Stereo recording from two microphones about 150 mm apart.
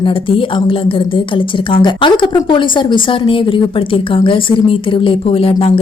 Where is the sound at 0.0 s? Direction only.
35° left (ahead or behind).